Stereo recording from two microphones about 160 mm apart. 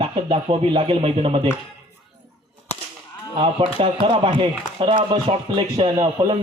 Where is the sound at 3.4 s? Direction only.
35° right (ahead or behind).